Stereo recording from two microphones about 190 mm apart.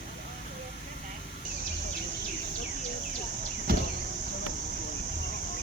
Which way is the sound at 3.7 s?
50° right (ahead or behind).